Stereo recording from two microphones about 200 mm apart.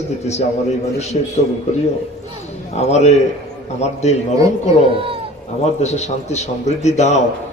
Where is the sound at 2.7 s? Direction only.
35° left (ahead or behind).